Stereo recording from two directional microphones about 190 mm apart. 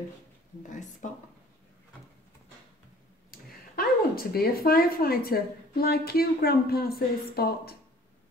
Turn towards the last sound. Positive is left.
turn(degrees=55)  # may be behind; listen again after turning